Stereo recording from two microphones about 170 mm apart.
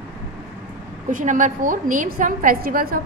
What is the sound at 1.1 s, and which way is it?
A woman's voice, 50° right (ahead or behind).